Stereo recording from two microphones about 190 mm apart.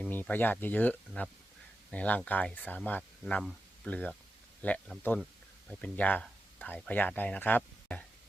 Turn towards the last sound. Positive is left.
turn(degrees=10)  # may be behind; listen again after turning